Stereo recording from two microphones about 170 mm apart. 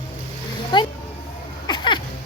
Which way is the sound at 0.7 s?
30° left (ahead or behind).